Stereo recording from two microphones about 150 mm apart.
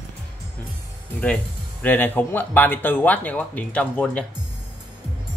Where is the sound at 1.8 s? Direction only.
10° left (ahead or behind).